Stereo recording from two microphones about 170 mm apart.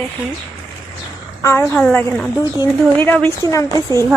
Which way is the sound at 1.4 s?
15° left (ahead or behind).